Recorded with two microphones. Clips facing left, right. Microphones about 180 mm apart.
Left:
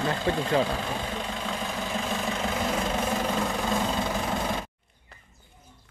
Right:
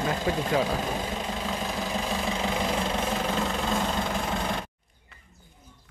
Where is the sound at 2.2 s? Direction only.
Centre (ahead or behind).